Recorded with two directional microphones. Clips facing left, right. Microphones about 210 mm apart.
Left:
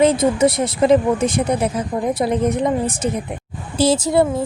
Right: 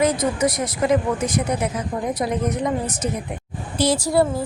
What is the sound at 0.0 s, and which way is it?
A woman's voice, 25° left (ahead or behind).